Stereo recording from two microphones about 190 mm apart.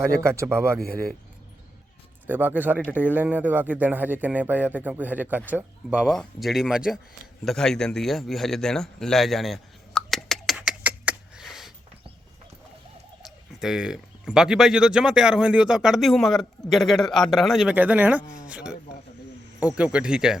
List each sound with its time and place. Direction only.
0.2 s a man's voice: 15° right (ahead or behind)
2.2 s a man's voice: 10° right (ahead or behind)
7.4 s a sound: 5° left (ahead or behind)
13.2 s speech: 5° right (ahead or behind)